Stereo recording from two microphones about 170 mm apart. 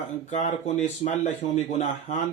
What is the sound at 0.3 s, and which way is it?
Speech, 45° left (ahead or behind).